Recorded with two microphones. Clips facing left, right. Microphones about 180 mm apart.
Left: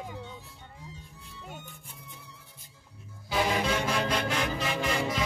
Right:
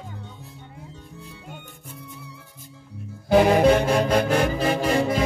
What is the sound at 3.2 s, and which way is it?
Music, 55° right (ahead or behind).